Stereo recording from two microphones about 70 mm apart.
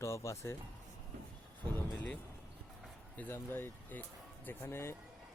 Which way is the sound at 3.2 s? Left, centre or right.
Left.